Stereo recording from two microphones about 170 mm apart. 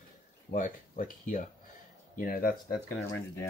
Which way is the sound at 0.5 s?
50° left (ahead or behind).